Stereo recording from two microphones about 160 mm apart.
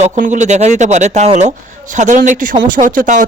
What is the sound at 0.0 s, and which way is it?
A man's voice, 50° right (ahead or behind).